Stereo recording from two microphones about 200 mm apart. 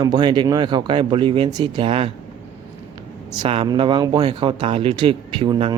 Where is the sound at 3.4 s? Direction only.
25° right (ahead or behind).